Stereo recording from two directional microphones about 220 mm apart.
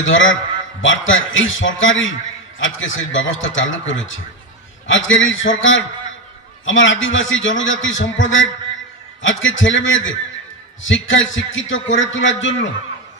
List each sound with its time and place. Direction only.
0.0 s a man's voice: 60° left (ahead or behind)